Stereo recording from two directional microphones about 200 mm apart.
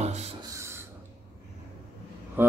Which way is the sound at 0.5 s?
15° right (ahead or behind).